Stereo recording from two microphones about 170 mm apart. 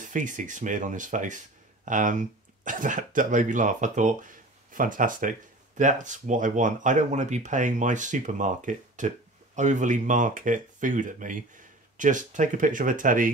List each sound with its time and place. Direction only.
0.1 s speech: 50° right (ahead or behind)